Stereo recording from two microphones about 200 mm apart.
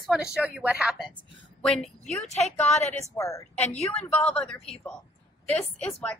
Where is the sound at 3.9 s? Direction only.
35° left (ahead or behind).